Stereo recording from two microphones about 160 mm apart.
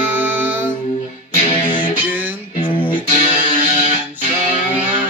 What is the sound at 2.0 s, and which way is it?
Music, 10° right (ahead or behind).